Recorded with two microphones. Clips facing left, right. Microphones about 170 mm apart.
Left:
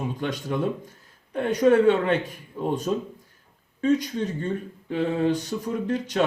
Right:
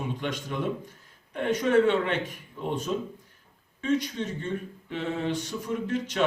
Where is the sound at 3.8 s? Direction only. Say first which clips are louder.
Left 4 dB; 40° left (ahead or behind).